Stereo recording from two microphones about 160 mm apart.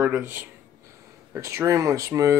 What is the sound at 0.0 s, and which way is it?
Speech, 15° right (ahead or behind).